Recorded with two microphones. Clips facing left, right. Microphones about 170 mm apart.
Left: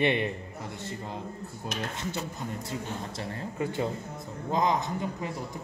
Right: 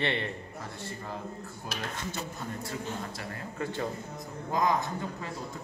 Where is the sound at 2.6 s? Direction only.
25° left (ahead or behind).